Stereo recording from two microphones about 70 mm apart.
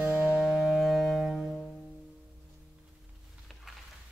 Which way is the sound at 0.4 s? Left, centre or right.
Centre.